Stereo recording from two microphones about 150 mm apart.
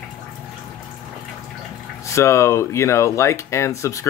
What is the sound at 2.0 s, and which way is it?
Speech, 20° left (ahead or behind).